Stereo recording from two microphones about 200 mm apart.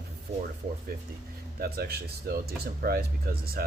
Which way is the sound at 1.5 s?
50° right (ahead or behind).